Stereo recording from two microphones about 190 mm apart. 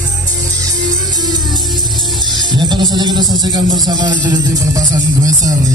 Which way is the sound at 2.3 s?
25° right (ahead or behind).